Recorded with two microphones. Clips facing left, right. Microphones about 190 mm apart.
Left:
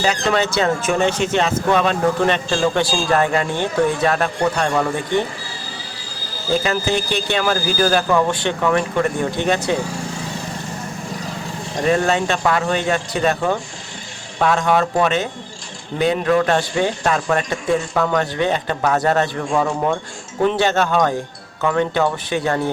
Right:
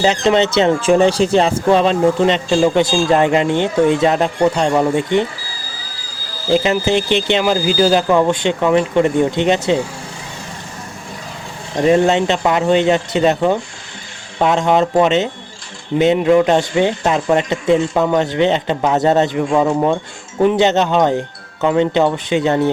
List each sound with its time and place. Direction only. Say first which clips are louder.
0.0 s speech: right 5 dB; 25° right (ahead or behind)
6.5 s speech: right 5 dB; 25° right (ahead or behind)
11.9 s speech: right 5 dB; 20° right (ahead or behind)